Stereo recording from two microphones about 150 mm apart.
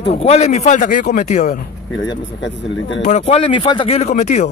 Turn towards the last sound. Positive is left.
turn(degrees=50)  # may be behind; listen again after turning